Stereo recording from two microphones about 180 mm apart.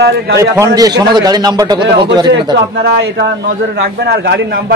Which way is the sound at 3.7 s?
60° right (ahead or behind).